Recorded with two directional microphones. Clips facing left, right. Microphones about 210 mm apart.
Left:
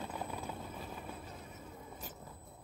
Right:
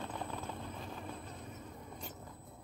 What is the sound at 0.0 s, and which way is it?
Vehicle, 10° left (ahead or behind).